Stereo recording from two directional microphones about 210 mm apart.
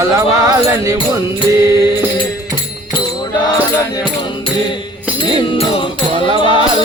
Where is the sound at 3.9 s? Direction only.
25° left (ahead or behind).